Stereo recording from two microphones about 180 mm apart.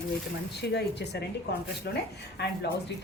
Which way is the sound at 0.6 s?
70° left (ahead or behind).